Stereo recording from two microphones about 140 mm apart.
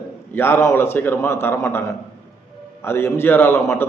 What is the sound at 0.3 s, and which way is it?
A man's voice, 15° left (ahead or behind).